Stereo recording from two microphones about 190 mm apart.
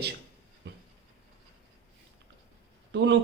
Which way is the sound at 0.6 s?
65° right (ahead or behind).